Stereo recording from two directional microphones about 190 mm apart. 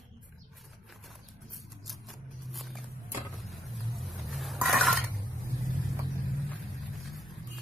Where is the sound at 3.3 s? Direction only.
Centre (ahead or behind).